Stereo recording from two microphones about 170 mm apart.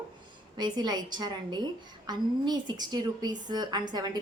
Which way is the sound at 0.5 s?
25° right (ahead or behind).